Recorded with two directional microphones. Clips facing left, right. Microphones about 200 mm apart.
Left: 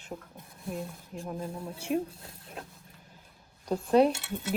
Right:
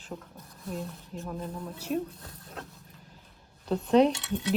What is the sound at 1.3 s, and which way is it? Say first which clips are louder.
Speech: left 1 dB; 10° left (ahead or behind).